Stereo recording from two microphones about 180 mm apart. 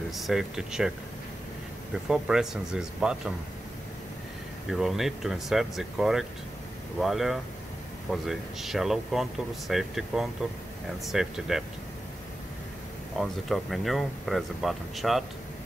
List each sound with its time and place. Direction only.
0.1 s speech: centre (ahead or behind)
2.0 s speech: 5° right (ahead or behind)
4.6 s speech: centre (ahead or behind)
13.2 s speech: centre (ahead or behind)